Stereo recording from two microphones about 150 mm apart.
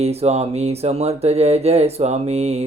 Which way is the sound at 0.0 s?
45° right (ahead or behind).